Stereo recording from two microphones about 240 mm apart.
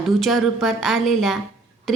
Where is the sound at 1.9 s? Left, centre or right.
Centre.